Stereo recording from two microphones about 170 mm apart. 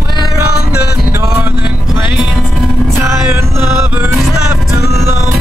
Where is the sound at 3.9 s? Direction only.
10° right (ahead or behind).